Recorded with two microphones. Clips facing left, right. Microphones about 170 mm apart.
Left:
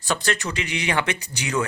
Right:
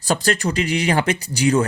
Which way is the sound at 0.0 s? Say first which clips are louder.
Right 5 dB; 35° right (ahead or behind).